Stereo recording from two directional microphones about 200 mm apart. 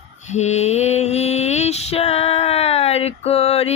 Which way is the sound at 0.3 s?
35° left (ahead or behind).